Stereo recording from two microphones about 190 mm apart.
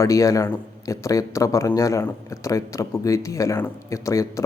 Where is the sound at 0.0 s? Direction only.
15° left (ahead or behind).